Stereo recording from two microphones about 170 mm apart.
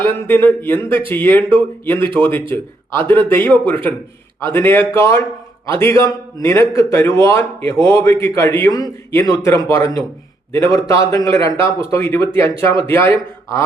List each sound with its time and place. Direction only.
0.0 s a man's voice: 10° left (ahead or behind)